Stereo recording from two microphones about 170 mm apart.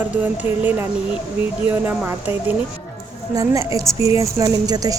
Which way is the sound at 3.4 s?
20° right (ahead or behind).